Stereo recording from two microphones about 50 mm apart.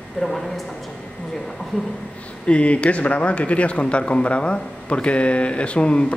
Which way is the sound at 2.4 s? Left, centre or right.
Left.